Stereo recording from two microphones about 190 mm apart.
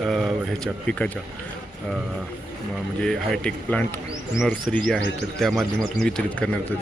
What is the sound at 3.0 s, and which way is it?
Speech, 5° left (ahead or behind).